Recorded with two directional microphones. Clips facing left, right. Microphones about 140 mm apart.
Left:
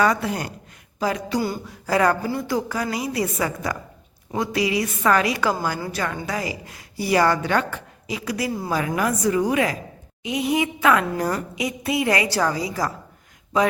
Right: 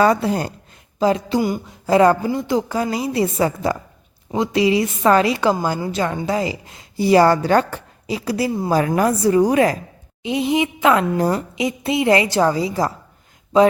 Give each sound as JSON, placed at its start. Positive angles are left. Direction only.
{"t": 0.0, "sound": "a woman's voice", "side_deg": -30}
{"t": 8.7, "sound": "a woman's voice", "side_deg": -35}